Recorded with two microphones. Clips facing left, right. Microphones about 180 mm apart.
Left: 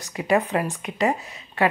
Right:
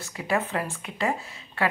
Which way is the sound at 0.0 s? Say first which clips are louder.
Left 6 dB; 15° left (ahead or behind).